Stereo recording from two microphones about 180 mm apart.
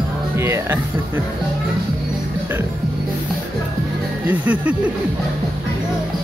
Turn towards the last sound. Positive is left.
turn(degrees=-10)  # may be behind; listen again after turning